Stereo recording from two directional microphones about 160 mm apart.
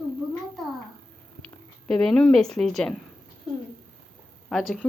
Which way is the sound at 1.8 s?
5° left (ahead or behind).